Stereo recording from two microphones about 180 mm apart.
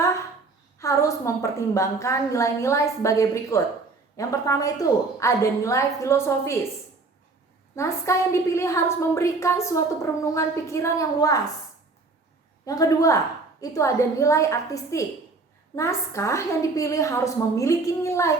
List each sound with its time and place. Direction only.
0.8 s a woman's voice: 15° left (ahead or behind)
7.8 s a woman's voice: 15° left (ahead or behind)
12.6 s a woman's voice: 20° left (ahead or behind)